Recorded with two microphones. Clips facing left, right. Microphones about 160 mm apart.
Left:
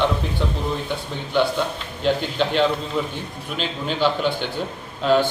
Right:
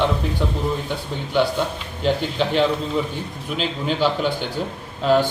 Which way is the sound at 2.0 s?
10° right (ahead or behind).